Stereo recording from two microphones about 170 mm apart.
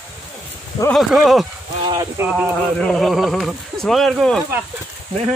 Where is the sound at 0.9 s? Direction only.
Centre (ahead or behind).